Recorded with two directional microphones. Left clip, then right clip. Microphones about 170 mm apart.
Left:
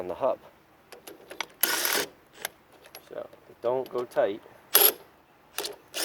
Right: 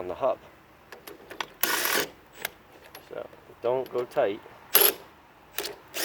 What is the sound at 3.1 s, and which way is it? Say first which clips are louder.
Mechanisms: right 1 dB; 40° left (ahead or behind).